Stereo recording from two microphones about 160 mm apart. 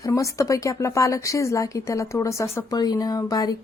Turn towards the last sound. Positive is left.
turn(degrees=25)  # may be behind; listen again after turning